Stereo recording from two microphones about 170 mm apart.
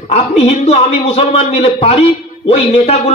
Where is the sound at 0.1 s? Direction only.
40° left (ahead or behind).